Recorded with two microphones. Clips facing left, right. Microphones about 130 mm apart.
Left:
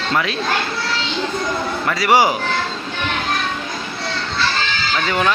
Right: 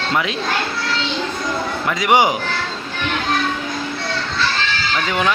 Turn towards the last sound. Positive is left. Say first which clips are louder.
# left 1 dB
turn(degrees=-10)  # may be behind; listen again after turning